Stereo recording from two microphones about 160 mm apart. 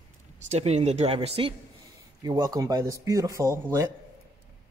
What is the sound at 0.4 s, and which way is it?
Speech, 40° right (ahead or behind).